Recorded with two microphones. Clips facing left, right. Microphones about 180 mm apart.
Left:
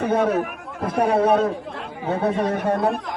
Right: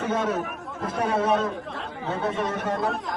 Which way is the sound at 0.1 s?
60° left (ahead or behind).